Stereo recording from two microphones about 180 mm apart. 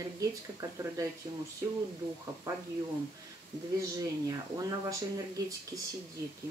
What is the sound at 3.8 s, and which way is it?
Speech, 20° right (ahead or behind).